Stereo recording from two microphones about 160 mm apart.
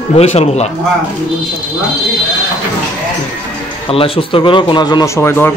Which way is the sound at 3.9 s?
35° left (ahead or behind).